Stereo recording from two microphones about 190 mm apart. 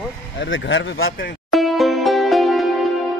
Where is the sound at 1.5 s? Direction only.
Centre (ahead or behind).